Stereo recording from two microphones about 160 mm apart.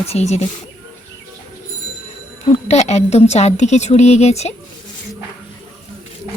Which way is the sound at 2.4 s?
40° left (ahead or behind).